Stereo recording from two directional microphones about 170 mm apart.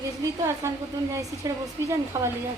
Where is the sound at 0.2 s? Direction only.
15° right (ahead or behind).